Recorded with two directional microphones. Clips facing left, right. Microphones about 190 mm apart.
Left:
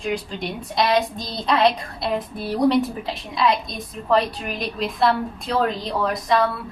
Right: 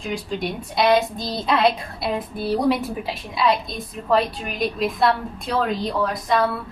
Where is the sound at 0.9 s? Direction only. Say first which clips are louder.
Even; 5° right (ahead or behind).